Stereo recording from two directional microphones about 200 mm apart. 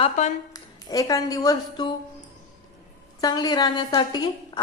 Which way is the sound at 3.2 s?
20° left (ahead or behind).